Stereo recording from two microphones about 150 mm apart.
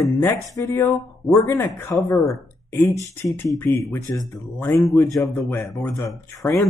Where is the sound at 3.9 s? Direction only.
15° left (ahead or behind).